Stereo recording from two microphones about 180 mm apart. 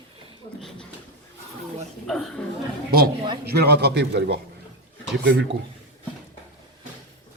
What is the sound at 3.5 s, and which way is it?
Speech, 65° right (ahead or behind).